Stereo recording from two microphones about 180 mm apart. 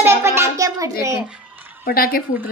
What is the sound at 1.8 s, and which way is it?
Speech, 55° left (ahead or behind).